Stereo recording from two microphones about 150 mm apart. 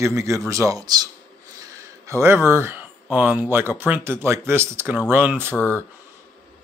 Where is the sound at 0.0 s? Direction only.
20° right (ahead or behind).